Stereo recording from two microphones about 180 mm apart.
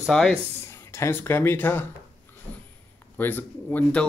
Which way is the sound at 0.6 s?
15° left (ahead or behind).